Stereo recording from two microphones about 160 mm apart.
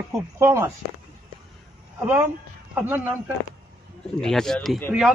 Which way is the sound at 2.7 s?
10° right (ahead or behind).